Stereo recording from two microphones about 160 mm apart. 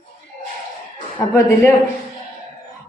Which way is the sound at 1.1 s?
15° left (ahead or behind).